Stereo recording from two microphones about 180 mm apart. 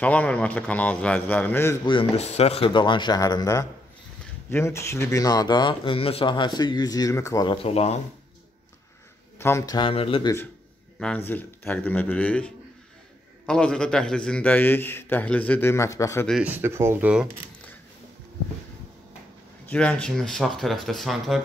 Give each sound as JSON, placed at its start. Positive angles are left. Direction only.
{"t": 0.0, "sound": "a man's voice", "side_deg": 10}
{"t": 1.9, "sound": "speech", "side_deg": 30}
{"t": 9.4, "sound": "speech", "side_deg": 15}
{"t": 11.0, "sound": "a man's voice", "side_deg": 10}
{"t": 16.3, "sound": "speech", "side_deg": -5}
{"t": 19.6, "sound": "speech", "side_deg": 5}